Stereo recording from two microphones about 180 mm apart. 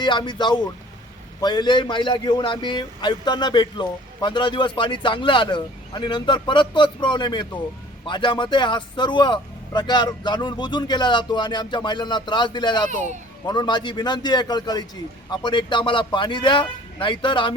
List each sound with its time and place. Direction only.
0.0 s a man's voice: 25° left (ahead or behind)